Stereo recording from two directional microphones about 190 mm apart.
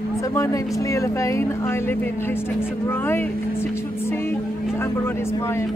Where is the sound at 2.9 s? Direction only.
10° left (ahead or behind).